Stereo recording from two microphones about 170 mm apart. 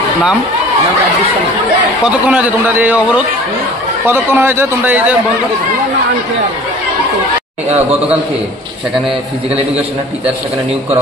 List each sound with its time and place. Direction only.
2.0 s a man's voice: 5° right (ahead or behind)